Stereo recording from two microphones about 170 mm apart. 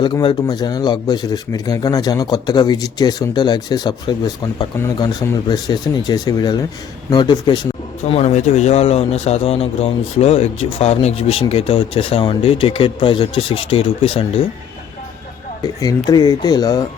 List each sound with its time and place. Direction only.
0.0 s speech: 25° left (ahead or behind)
16.0 s speech: 25° left (ahead or behind)